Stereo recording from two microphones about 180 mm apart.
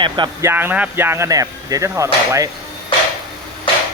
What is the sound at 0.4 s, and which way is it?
Speech, 10° right (ahead or behind).